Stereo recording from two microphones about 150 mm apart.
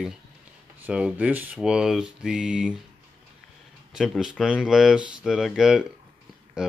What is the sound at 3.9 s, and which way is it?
Speech, centre (ahead or behind).